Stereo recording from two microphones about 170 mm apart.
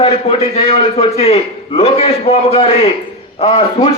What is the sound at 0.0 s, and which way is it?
A man's voice, 35° left (ahead or behind).